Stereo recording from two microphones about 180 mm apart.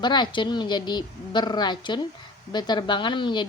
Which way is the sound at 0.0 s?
25° left (ahead or behind).